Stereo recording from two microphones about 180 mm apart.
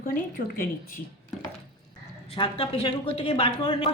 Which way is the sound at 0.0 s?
50° left (ahead or behind).